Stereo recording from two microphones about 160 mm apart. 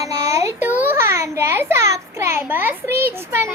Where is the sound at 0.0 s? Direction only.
20° right (ahead or behind).